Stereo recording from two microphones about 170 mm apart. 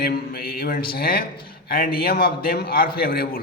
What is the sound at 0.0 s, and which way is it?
A man's voice, 60° left (ahead or behind).